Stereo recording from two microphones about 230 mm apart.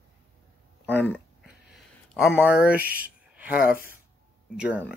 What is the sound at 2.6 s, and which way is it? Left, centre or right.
Speech, centre.